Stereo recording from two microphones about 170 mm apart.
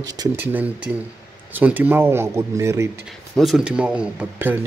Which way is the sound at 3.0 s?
Centre (ahead or behind).